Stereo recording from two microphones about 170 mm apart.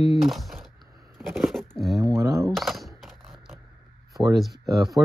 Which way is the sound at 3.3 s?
Centre (ahead or behind).